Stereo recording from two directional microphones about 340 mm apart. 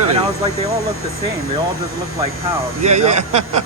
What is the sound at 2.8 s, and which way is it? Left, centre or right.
Speech, centre.